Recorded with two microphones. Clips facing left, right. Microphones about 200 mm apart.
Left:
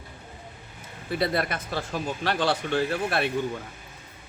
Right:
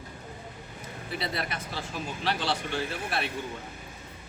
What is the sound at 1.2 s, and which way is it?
A man's voice, 55° left (ahead or behind).